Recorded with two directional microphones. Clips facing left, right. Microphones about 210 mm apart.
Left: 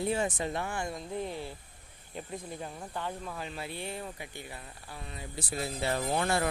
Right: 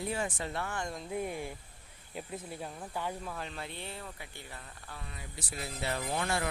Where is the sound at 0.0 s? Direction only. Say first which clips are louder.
Left 5 dB; 25° left (ahead or behind); by 1.0 s 5° left (ahead or behind).